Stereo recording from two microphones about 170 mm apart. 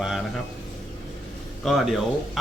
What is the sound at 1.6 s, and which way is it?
Speech, centre (ahead or behind).